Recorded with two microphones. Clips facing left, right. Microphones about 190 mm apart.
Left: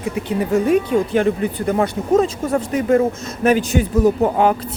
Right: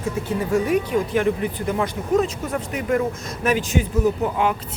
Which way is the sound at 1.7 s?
45° left (ahead or behind).